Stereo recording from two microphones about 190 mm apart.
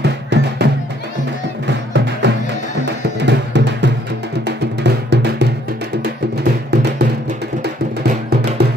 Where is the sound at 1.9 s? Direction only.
65° right (ahead or behind).